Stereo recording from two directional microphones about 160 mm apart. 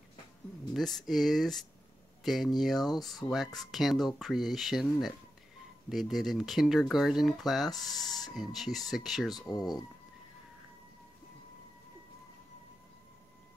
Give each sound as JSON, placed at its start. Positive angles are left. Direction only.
{"t": 0.7, "sound": "speech", "side_deg": 0}
{"t": 9.3, "sound": "speech", "side_deg": 25}